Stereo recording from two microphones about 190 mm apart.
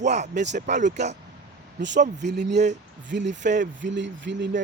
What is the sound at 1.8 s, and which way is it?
Speech, 70° right (ahead or behind).